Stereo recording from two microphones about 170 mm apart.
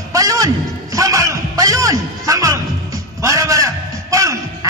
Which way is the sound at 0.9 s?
20° right (ahead or behind).